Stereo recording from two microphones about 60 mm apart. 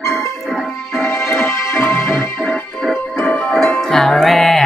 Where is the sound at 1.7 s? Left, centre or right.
Left.